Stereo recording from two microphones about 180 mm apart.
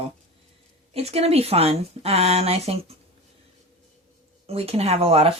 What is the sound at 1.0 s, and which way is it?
A woman's voice, 35° right (ahead or behind).